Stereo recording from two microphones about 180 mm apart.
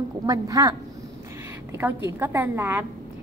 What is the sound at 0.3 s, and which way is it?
A woman's voice, 20° right (ahead or behind).